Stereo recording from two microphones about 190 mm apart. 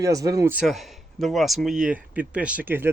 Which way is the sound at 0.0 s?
20° right (ahead or behind).